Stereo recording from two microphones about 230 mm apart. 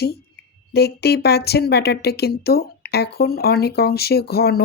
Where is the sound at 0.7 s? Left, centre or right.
Left.